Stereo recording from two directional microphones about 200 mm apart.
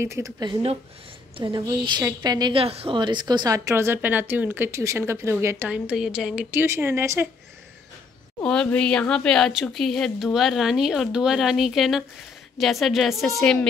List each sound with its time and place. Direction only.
0.0 s a woman's voice: 15° right (ahead or behind)
8.4 s speech: 5° left (ahead or behind)